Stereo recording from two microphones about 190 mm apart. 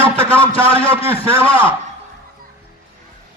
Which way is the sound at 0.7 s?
30° left (ahead or behind).